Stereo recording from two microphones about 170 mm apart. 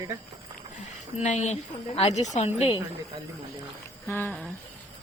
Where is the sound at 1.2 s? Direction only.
40° left (ahead or behind).